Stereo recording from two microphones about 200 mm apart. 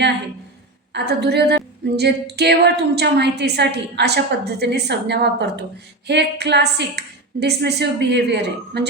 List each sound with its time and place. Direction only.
0.9 s a woman's voice: 55° right (ahead or behind)